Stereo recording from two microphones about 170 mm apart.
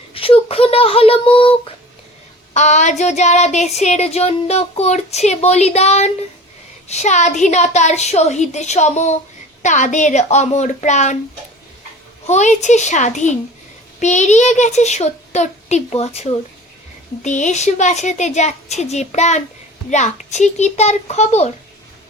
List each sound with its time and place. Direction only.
0.1 s speech: 30° left (ahead or behind)
2.5 s child singing: 45° left (ahead or behind)
6.8 s a woman's voice: 40° left (ahead or behind)
12.2 s a woman's voice: 40° left (ahead or behind)
19.9 s child singing: 45° left (ahead or behind)